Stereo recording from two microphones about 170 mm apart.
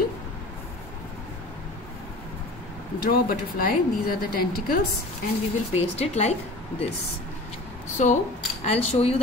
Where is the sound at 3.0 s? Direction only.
60° left (ahead or behind).